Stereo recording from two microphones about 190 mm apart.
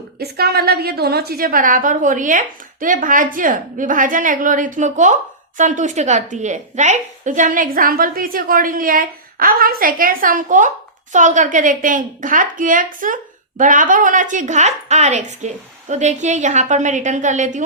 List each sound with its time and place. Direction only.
0.2 s a woman's voice: 55° right (ahead or behind); by 17.6 s 40° right (ahead or behind)